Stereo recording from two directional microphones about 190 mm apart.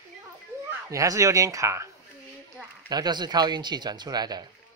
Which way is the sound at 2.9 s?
20° right (ahead or behind).